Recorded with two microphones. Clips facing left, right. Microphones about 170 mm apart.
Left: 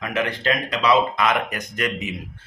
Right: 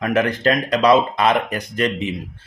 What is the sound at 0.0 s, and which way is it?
Speech, 45° right (ahead or behind).